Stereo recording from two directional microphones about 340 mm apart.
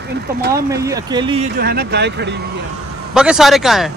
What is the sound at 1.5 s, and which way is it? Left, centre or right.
Speech, right.